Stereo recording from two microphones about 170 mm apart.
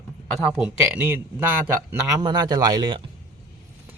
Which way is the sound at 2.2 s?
25° right (ahead or behind).